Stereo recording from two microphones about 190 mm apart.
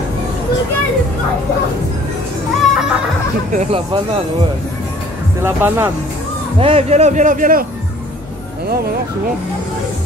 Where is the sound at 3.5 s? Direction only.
30° right (ahead or behind).